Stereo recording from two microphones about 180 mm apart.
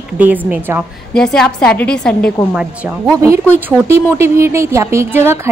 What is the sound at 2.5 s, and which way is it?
Speech, 10° right (ahead or behind).